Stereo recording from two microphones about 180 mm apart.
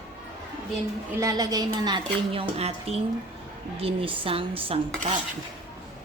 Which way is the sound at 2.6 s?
35° right (ahead or behind).